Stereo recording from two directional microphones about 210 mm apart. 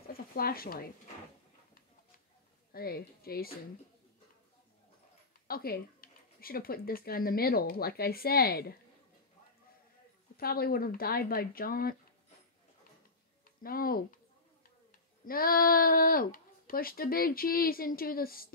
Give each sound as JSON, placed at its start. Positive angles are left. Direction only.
{"t": 0.1, "sound": "speech", "side_deg": 45}
{"t": 2.7, "sound": "speech", "side_deg": 45}
{"t": 5.5, "sound": "speech", "side_deg": 45}
{"t": 10.3, "sound": "speech", "side_deg": 45}
{"t": 13.6, "sound": "speech", "side_deg": 45}